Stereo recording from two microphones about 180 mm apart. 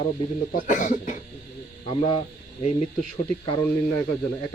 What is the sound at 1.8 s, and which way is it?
Speech, 35° left (ahead or behind).